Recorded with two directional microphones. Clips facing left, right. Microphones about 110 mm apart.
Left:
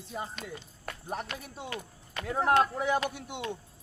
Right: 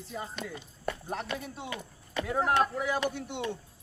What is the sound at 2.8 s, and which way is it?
Speech, 20° left (ahead or behind).